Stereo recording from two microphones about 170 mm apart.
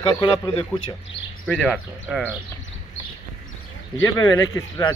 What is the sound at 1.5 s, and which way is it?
Speech, 5° left (ahead or behind).